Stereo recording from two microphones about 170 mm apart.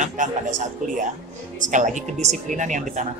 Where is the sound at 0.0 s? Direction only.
50° right (ahead or behind).